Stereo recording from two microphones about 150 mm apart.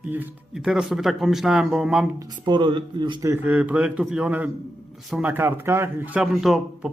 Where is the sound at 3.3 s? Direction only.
10° right (ahead or behind).